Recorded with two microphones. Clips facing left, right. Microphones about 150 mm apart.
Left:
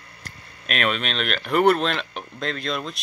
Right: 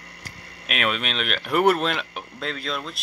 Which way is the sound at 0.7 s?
5° right (ahead or behind).